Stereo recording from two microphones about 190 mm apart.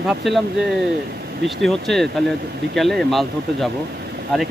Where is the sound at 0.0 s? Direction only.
Centre (ahead or behind).